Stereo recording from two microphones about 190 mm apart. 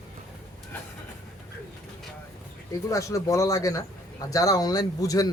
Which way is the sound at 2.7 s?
15° left (ahead or behind).